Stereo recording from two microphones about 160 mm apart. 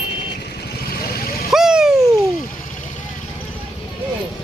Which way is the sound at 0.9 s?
65° left (ahead or behind).